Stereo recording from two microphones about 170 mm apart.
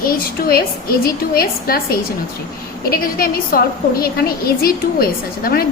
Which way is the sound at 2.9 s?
60° left (ahead or behind).